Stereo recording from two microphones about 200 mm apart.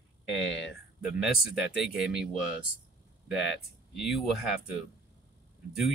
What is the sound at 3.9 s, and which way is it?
Speech, centre (ahead or behind).